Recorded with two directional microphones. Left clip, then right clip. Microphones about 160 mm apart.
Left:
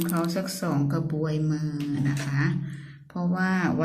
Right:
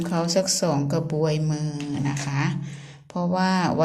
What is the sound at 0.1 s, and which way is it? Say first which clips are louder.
A woman's voice: right 6 dB; 35° right (ahead or behind).